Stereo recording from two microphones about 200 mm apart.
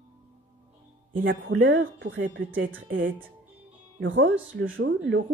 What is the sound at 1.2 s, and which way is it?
Speech, 70° right (ahead or behind).